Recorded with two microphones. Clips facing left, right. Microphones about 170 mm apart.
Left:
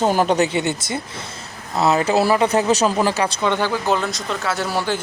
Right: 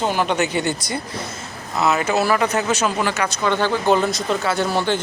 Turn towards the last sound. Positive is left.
turn(degrees=5)  # may be behind; listen again after turning